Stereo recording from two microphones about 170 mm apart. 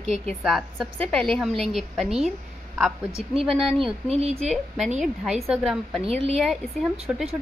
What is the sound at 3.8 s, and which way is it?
Speech, 35° right (ahead or behind).